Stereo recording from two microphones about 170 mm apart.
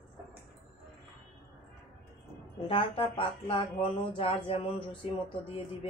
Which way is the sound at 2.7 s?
30° left (ahead or behind).